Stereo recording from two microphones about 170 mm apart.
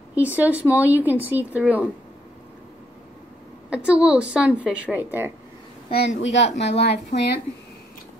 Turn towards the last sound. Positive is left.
turn(degrees=80)